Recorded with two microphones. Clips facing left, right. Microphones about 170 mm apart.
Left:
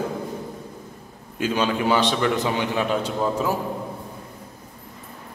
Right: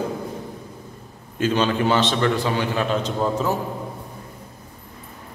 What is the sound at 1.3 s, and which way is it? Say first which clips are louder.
A man's voice: right 2 dB; 10° left (ahead or behind).